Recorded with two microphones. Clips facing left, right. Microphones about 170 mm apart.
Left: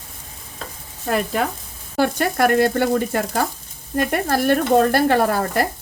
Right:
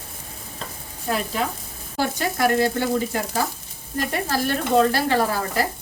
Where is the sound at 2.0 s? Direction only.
60° left (ahead or behind).